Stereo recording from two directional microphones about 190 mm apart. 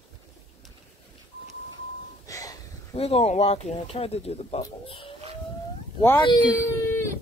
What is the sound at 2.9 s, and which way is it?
Speech, 30° left (ahead or behind).